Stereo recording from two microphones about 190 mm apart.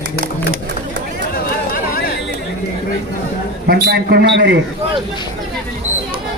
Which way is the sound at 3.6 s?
55° right (ahead or behind).